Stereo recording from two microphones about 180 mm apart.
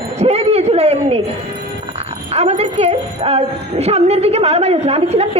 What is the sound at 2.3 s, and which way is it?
A woman's voice, 35° right (ahead or behind).